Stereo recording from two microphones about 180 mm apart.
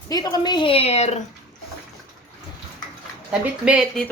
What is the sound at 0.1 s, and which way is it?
A woman's voice, 20° left (ahead or behind).